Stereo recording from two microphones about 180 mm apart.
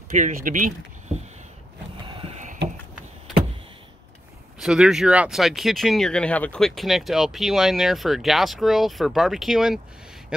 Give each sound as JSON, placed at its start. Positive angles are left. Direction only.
{"t": 0.2, "sound": "speech", "side_deg": -45}
{"t": 2.0, "sound": "a sound", "side_deg": -30}
{"t": 4.6, "sound": "speech", "side_deg": -5}